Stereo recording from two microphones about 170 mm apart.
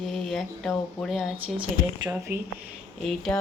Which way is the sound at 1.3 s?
30° right (ahead or behind).